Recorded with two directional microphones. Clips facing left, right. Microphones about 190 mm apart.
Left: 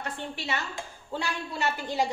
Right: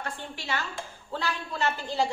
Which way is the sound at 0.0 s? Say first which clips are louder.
Left 2 dB; 20° left (ahead or behind).